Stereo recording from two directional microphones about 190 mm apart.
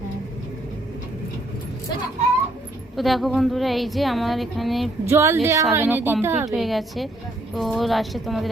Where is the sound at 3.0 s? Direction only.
Centre (ahead or behind).